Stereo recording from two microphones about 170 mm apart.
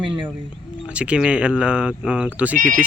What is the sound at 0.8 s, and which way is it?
Speech, 5° right (ahead or behind).